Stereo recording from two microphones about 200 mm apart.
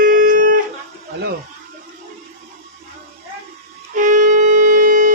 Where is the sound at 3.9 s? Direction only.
40° right (ahead or behind).